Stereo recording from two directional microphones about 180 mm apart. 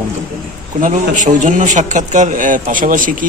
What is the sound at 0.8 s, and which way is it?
A man's voice, 45° right (ahead or behind).